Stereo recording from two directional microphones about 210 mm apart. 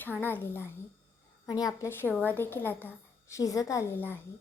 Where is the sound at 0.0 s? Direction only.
10° left (ahead or behind).